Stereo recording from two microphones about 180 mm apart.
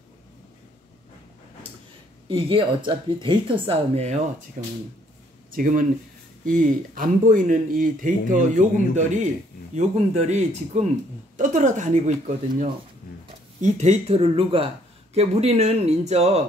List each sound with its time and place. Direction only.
2.2 s speech: 30° right (ahead or behind)
5.5 s speech: 50° right (ahead or behind)